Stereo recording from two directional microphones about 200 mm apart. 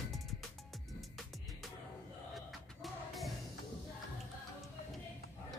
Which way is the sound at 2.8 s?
Centre (ahead or behind).